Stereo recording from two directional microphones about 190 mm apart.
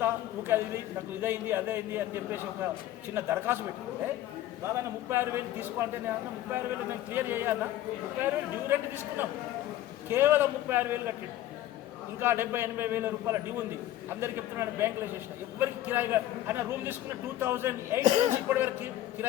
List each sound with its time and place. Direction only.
0.0 s a sound: 10° right (ahead or behind)
1.2 s a man's voice: 10° right (ahead or behind)
4.6 s a man's voice: 15° right (ahead or behind)
8.7 s a man's voice: 10° right (ahead or behind)
12.2 s a man's voice: 10° right (ahead or behind)
18.0 s speech: 40° right (ahead or behind)
18.4 s a man's voice: 10° right (ahead or behind)